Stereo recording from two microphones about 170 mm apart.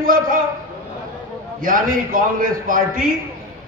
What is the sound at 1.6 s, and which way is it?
A man's voice, 55° right (ahead or behind).